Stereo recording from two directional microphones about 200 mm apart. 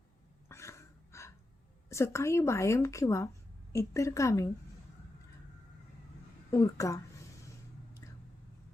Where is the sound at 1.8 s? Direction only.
15° left (ahead or behind).